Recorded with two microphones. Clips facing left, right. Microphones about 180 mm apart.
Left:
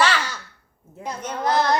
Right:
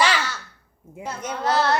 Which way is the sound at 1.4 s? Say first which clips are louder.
Left 1 dB; 15° left (ahead or behind).